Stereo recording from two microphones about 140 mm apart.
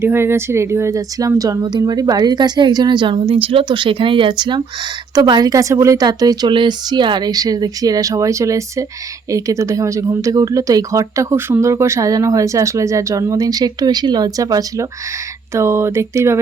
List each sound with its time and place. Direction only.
0.0 s speech: 15° right (ahead or behind)